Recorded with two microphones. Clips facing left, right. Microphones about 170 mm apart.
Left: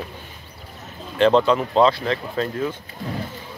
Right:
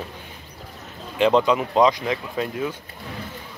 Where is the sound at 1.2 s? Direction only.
10° right (ahead or behind).